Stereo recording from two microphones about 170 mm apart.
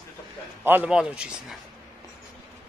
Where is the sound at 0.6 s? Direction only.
10° right (ahead or behind).